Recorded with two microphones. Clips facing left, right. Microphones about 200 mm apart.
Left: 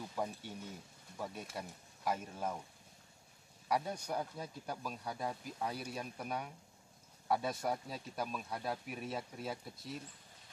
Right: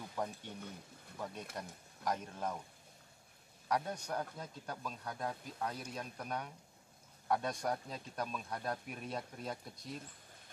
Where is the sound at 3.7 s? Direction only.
10° left (ahead or behind).